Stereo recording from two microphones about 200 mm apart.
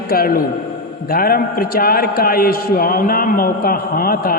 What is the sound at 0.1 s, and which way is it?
A man's voice, 45° left (ahead or behind).